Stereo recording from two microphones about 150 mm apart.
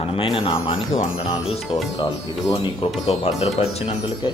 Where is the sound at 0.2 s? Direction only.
35° left (ahead or behind).